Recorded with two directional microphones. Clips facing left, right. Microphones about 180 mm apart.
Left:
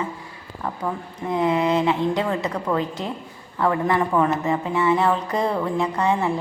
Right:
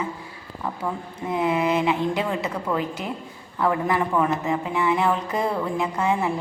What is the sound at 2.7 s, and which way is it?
Speech, 10° left (ahead or behind).